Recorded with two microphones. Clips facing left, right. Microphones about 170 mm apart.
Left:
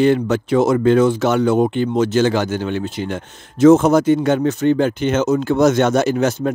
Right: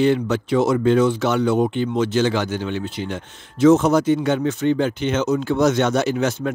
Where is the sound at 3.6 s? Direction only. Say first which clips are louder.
Left 4 dB; 50° left (ahead or behind).